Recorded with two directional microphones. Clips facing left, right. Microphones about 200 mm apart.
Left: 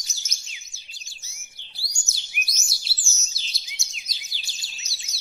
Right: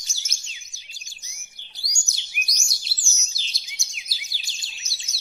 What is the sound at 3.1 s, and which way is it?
Chirp, centre (ahead or behind).